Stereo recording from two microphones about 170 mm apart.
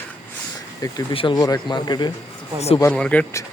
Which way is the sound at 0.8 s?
25° left (ahead or behind).